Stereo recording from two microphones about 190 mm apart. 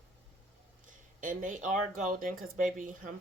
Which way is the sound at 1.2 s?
45° right (ahead or behind).